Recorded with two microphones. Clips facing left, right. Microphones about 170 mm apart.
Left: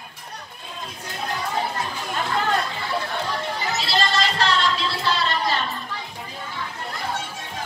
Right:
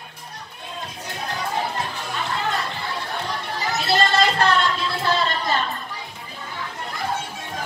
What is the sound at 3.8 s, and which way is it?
Music, 55° right (ahead or behind).